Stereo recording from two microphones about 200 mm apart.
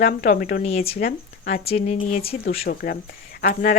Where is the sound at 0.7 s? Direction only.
30° left (ahead or behind).